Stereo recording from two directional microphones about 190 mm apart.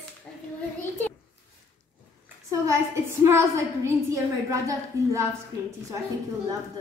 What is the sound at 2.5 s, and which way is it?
A woman's voice, 15° right (ahead or behind).